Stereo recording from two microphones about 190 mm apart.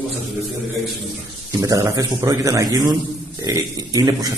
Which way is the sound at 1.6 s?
20° right (ahead or behind).